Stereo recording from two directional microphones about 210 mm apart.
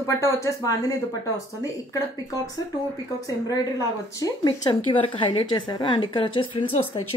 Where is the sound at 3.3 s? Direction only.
15° left (ahead or behind).